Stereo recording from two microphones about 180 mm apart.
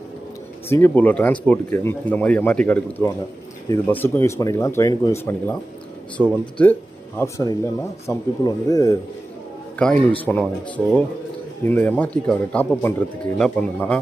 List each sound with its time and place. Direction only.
0.7 s speech: 10° left (ahead or behind)
6.2 s speech: centre (ahead or behind)
7.2 s speech: 15° left (ahead or behind)
9.7 s speech: 5° left (ahead or behind)